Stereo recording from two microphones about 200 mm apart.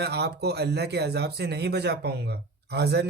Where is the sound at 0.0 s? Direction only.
55° right (ahead or behind).